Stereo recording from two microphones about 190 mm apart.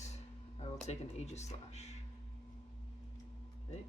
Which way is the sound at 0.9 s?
35° left (ahead or behind).